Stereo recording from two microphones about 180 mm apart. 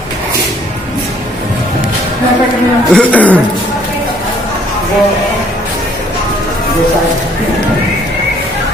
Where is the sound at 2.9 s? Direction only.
10° left (ahead or behind).